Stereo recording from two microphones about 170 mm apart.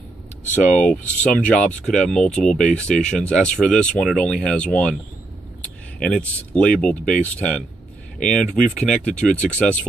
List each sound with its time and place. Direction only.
0.7 s speech: 10° left (ahead or behind)
5.9 s speech: 5° left (ahead or behind)